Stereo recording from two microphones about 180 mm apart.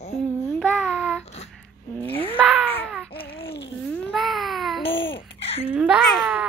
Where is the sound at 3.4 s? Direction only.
70° left (ahead or behind).